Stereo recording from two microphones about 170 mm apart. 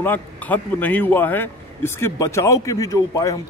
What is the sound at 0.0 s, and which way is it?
A man's voice, 10° left (ahead or behind).